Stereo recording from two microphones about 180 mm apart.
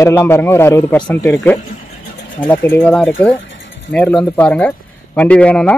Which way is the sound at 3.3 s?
90° left.